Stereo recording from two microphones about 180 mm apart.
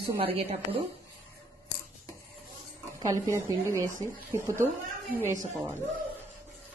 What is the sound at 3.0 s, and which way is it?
Speech, 20° right (ahead or behind).